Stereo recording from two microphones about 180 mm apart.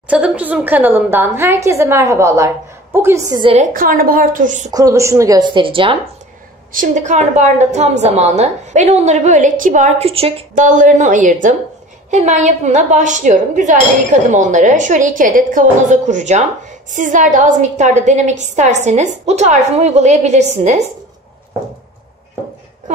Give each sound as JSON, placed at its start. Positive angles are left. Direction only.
{"t": 0.1, "sound": "a woman's voice", "side_deg": -5}
{"t": 3.5, "sound": "a woman's voice", "side_deg": -50}
{"t": 4.6, "sound": "a woman's voice", "side_deg": -20}
{"t": 6.7, "sound": "a woman's voice", "side_deg": -45}
{"t": 10.5, "sound": "a woman's voice", "side_deg": -45}